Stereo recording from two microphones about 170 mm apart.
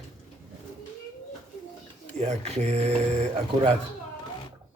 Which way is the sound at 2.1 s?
40° right (ahead or behind).